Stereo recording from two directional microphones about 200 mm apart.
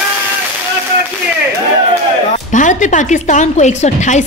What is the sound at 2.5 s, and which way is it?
A woman's voice, 40° left (ahead or behind).